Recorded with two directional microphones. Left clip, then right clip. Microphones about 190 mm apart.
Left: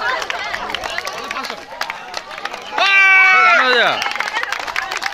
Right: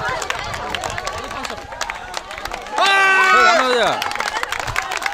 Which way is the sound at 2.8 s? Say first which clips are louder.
Left 3 dB; 30° right (ahead or behind).